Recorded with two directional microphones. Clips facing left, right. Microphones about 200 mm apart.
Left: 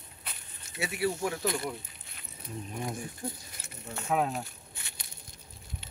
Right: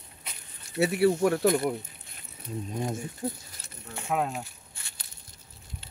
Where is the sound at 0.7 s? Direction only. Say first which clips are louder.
Right 11 dB; 35° right (ahead or behind).